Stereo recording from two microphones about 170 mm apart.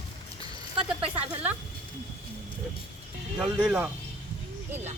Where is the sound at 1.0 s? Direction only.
35° right (ahead or behind).